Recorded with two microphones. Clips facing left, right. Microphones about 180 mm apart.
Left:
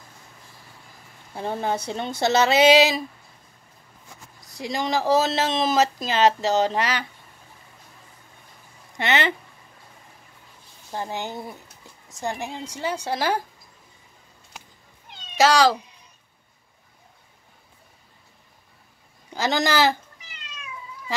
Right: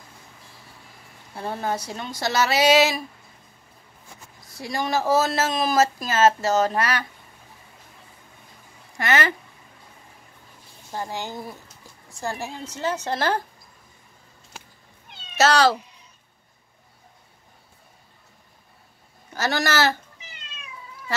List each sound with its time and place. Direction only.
1.3 s speech: 20° left (ahead or behind)
4.5 s speech: 20° left (ahead or behind)
8.9 s speech: 20° left (ahead or behind)
10.9 s a woman's voice: 20° left (ahead or behind)
15.3 s a woman's voice: 15° left (ahead or behind)
19.3 s a woman's voice: 15° left (ahead or behind)